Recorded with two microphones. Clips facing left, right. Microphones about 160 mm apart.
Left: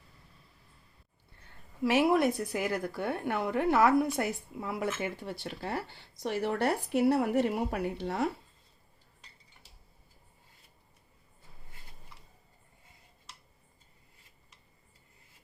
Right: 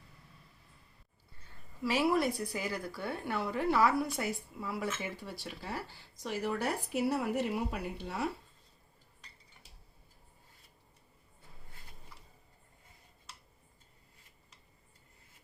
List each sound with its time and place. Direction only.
2.0 s a woman's voice: 55° left (ahead or behind)